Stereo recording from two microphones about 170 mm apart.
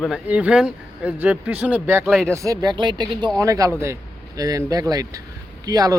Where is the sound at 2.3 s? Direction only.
20° right (ahead or behind).